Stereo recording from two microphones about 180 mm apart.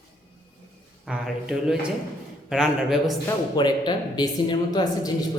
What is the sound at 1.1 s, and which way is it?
A man's voice, 5° right (ahead or behind).